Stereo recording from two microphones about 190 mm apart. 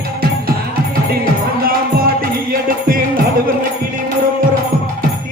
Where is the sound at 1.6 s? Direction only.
50° right (ahead or behind).